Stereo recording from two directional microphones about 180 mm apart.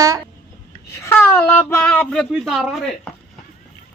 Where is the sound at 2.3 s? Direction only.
Centre (ahead or behind).